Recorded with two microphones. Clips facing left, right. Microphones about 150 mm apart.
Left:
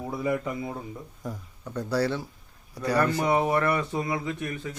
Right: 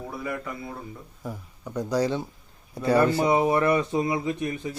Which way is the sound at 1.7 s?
15° right (ahead or behind).